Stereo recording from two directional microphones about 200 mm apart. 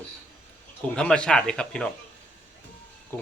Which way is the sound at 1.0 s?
5° left (ahead or behind).